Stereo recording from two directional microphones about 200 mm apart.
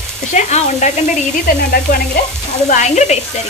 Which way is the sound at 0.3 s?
35° left (ahead or behind).